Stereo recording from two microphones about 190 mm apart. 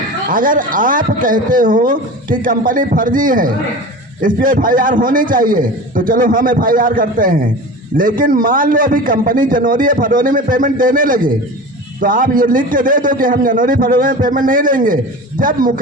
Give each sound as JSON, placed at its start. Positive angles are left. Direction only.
{"t": 0.3, "sound": "a man's voice", "side_deg": -45}